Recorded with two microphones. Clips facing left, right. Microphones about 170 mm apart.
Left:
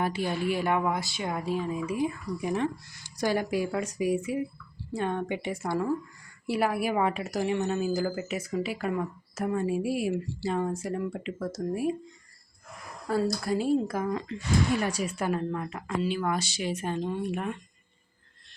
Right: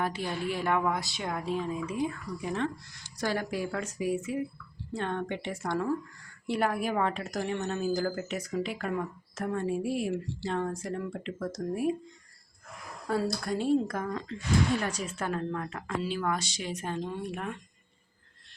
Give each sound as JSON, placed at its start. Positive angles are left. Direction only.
{"t": 0.0, "sound": "a woman's voice", "side_deg": 5}
{"t": 13.1, "sound": "a woman's voice", "side_deg": 0}